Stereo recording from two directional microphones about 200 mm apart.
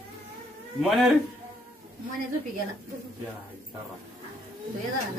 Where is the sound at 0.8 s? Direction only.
Centre (ahead or behind).